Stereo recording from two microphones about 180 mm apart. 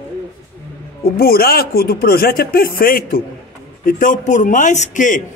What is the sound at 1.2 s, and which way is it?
Speech, 55° left (ahead or behind).